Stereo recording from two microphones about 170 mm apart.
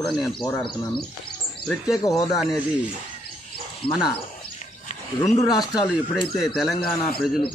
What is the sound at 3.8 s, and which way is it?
Speech, 30° left (ahead or behind).